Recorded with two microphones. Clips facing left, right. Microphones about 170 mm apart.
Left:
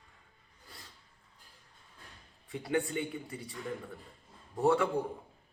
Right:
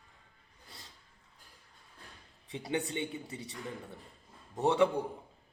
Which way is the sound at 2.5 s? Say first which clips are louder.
Left 2 dB; 20° right (ahead or behind).